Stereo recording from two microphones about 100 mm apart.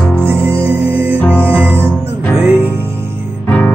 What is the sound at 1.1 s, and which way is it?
Music, 20° left (ahead or behind).